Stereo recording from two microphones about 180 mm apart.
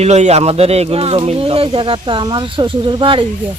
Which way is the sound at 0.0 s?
35° right (ahead or behind).